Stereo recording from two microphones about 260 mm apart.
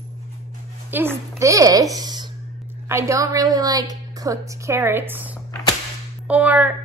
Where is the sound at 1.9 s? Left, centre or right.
Centre.